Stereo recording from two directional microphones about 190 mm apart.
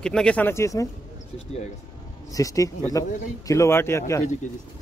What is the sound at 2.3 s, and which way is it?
Speech, 15° left (ahead or behind).